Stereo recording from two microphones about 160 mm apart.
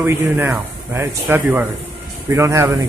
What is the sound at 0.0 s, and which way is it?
Speech, 15° right (ahead or behind).